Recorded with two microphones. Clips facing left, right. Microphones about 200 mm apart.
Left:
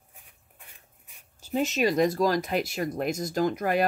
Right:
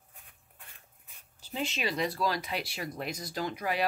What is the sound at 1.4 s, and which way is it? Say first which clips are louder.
Speech: left 9 dB; 45° left (ahead or behind).